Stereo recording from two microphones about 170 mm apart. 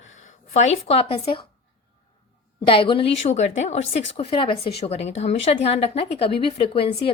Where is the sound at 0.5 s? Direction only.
40° left (ahead or behind).